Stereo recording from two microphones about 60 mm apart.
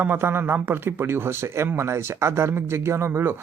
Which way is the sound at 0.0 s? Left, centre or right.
Right.